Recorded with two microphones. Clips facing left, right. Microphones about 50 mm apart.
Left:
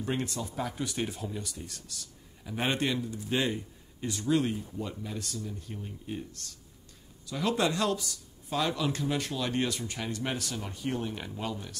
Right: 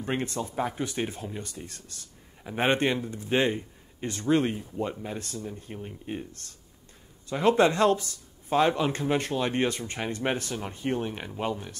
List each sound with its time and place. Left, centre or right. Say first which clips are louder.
0.0 s speech: right 3 dB; right